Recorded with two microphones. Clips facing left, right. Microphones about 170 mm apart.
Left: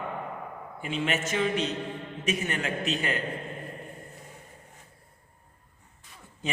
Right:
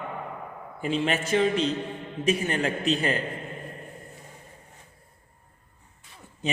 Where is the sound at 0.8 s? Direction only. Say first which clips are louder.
Right 4 dB; 35° right (ahead or behind).